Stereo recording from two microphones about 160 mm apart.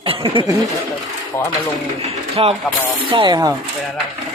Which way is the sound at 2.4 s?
35° right (ahead or behind).